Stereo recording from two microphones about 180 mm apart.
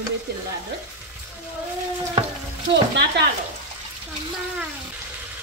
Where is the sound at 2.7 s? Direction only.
70° right (ahead or behind).